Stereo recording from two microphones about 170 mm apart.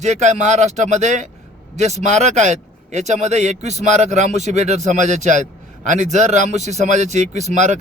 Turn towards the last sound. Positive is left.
turn(degrees=-45)  # may be behind; listen again after turning